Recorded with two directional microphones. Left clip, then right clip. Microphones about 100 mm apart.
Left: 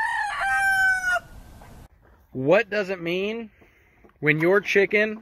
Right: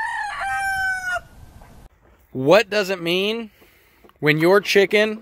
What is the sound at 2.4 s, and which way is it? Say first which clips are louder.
Speech: right 5 dB; 75° right (ahead or behind).